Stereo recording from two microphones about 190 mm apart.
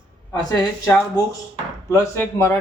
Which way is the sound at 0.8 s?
15° left (ahead or behind).